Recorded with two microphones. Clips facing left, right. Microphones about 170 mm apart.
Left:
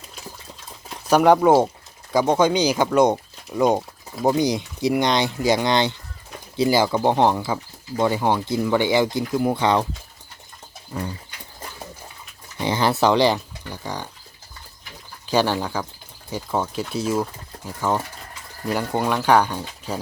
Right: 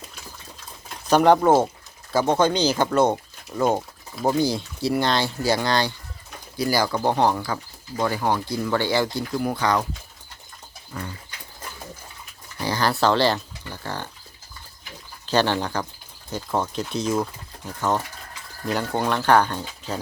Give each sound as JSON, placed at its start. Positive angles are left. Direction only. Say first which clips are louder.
{"t": 1.0, "sound": "speech", "louder": "left 1 dB", "side_deg": 10}
{"t": 12.5, "sound": "speech", "louder": "left 3 dB", "side_deg": 20}
{"t": 15.3, "sound": "speech", "louder": "left 1 dB", "side_deg": 10}